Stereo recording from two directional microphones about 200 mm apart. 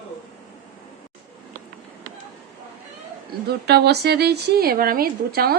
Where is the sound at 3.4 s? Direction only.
55° right (ahead or behind).